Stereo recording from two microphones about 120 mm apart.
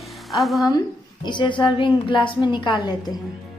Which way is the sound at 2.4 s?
40° left (ahead or behind).